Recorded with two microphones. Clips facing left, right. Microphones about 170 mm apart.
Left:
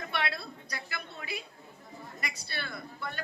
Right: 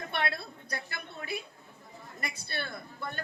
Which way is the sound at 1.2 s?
50° right (ahead or behind).